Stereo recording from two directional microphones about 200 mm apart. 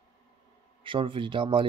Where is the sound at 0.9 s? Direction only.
25° right (ahead or behind).